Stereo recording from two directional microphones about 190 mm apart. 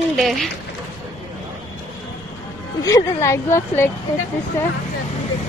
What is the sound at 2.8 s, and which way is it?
Speech, 15° left (ahead or behind).